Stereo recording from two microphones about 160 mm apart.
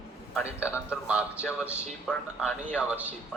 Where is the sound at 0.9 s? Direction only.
10° right (ahead or behind).